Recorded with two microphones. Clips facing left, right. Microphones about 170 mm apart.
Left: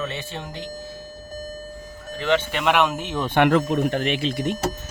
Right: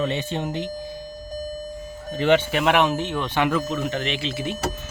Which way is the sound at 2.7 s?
5° left (ahead or behind).